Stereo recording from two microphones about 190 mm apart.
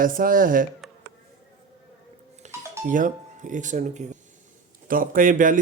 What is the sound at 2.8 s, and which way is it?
A man's voice, 45° right (ahead or behind).